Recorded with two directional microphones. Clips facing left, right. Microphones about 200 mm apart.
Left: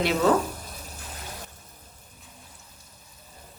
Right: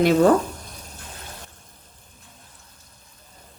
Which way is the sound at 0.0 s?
45° right (ahead or behind).